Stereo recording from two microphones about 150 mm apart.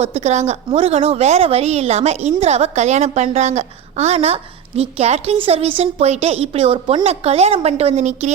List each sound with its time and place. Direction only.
0.0 s a woman's voice: 45° right (ahead or behind)